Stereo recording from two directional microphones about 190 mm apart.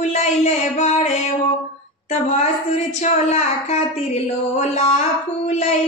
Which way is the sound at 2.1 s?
35° left (ahead or behind).